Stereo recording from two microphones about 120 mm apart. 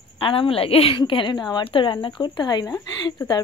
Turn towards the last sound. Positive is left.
turn(degrees=35)  # may be behind; listen again after turning